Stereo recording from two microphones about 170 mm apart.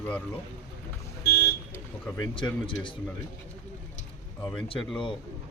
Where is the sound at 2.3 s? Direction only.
30° left (ahead or behind).